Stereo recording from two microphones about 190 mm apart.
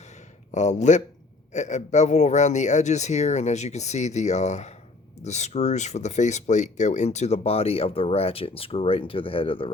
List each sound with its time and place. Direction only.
0.5 s speech: 40° left (ahead or behind)